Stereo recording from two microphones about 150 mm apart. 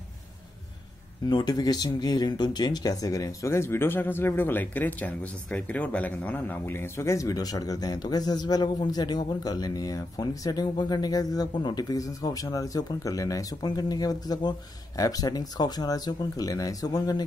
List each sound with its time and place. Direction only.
1.3 s speech: 25° left (ahead or behind)